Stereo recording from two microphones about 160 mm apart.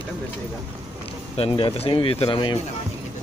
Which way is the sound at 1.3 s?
35° left (ahead or behind).